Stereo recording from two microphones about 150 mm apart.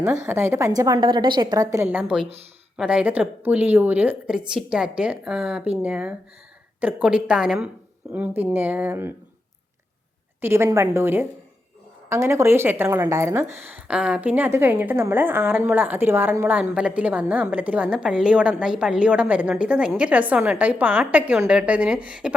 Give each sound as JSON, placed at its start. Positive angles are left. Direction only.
{"t": 0.0, "sound": "a woman's voice", "side_deg": -15}
{"t": 10.4, "sound": "a woman's voice", "side_deg": -15}